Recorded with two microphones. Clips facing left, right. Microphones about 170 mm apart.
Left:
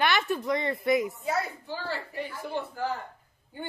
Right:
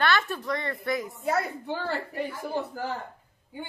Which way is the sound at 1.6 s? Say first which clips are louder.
Right 4 dB; 60° right (ahead or behind).